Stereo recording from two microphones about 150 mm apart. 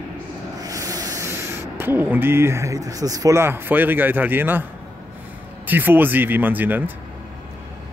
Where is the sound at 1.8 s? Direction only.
15° right (ahead or behind).